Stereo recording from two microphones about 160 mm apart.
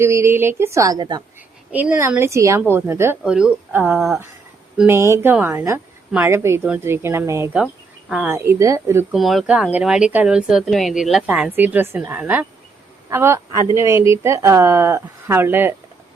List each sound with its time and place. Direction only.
0.0 s a woman's voice: 15° right (ahead or behind)
1.7 s a woman's voice: 10° right (ahead or behind)
3.9 s speech: centre (ahead or behind)
4.9 s a woman's voice: 20° right (ahead or behind)
9.1 s a woman's voice: centre (ahead or behind)